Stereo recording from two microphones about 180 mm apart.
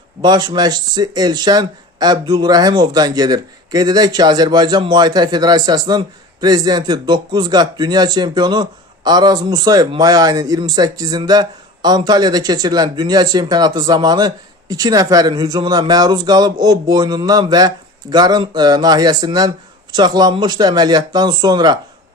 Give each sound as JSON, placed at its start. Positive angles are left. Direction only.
{"t": 0.2, "sound": "a man's voice", "side_deg": -25}